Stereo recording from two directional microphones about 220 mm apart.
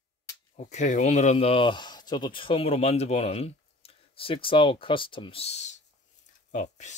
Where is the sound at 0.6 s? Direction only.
30° left (ahead or behind).